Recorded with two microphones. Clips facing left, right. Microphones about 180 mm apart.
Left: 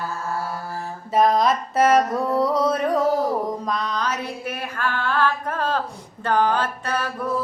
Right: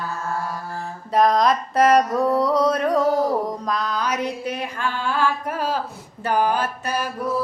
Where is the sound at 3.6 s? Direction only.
Centre (ahead or behind).